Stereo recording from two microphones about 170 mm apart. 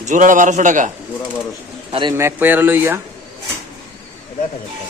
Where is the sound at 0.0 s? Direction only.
50° right (ahead or behind).